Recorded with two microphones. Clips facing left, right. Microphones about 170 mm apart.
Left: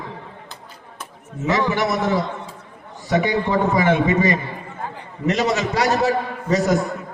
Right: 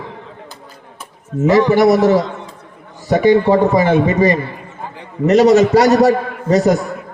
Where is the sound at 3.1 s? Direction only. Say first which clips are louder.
Right 8 dB; 40° right (ahead or behind).